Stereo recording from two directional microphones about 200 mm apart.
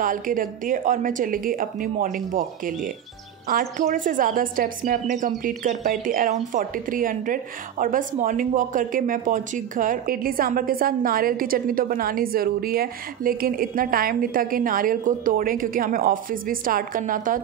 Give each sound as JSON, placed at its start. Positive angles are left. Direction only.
{"t": 0.0, "sound": "speech", "side_deg": -45}